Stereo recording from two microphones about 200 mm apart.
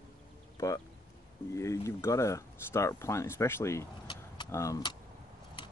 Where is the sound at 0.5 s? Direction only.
15° left (ahead or behind).